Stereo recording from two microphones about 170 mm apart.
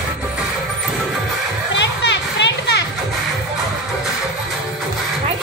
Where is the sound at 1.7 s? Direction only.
90° left.